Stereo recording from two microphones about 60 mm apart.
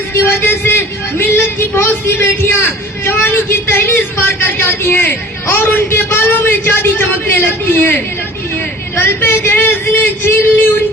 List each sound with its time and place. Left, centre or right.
0.1 s a man's voice: left